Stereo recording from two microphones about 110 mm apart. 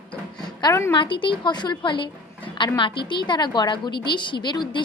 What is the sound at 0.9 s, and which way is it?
Speech, 50° left (ahead or behind).